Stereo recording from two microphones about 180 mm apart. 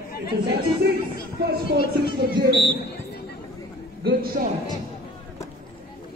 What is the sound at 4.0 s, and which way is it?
Speech, 55° right (ahead or behind).